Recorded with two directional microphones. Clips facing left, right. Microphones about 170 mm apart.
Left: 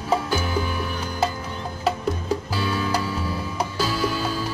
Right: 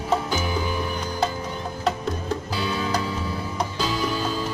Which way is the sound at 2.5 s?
15° right (ahead or behind).